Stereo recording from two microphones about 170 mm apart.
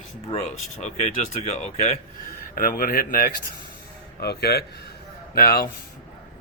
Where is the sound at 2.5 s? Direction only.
60° left (ahead or behind).